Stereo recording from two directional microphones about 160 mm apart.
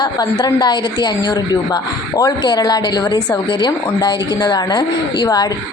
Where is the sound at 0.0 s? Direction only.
25° left (ahead or behind).